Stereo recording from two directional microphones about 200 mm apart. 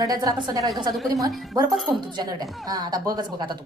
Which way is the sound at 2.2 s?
20° right (ahead or behind).